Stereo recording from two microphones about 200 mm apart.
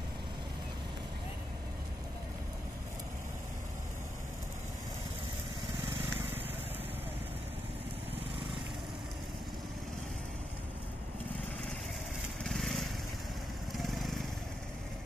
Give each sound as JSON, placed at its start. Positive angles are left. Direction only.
{"t": 12.4, "sound": "lawn mower", "side_deg": 0}